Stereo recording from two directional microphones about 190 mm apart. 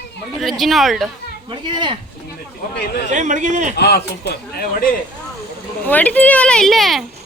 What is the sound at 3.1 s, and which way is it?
Speech, 40° right (ahead or behind).